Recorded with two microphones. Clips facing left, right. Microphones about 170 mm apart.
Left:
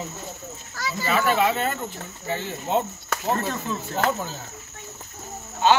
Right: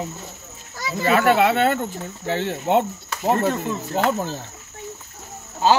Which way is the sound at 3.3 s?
55° right (ahead or behind).